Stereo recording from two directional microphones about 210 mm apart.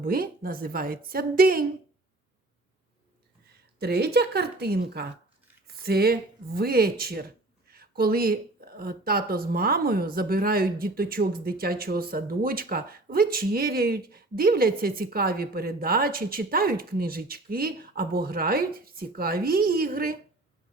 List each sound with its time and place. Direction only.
0.0 s speech: 45° right (ahead or behind)
3.8 s speech: 50° right (ahead or behind)